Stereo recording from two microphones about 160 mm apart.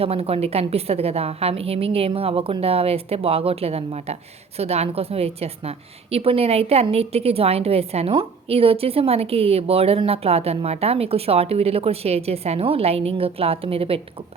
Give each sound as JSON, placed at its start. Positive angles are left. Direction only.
{"t": 0.0, "sound": "a woman's voice", "side_deg": -40}